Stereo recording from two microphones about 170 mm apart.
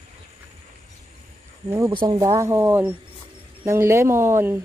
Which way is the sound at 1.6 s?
15° right (ahead or behind).